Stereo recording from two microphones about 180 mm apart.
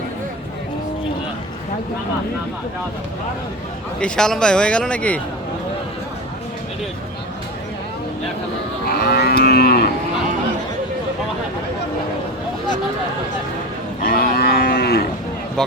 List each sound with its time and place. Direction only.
4.0 s speech: 5° left (ahead or behind)
8.9 s livestock: 60° left (ahead or behind)
14.0 s cattle: 60° left (ahead or behind)